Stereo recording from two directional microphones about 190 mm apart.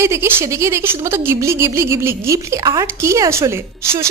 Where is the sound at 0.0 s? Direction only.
15° right (ahead or behind).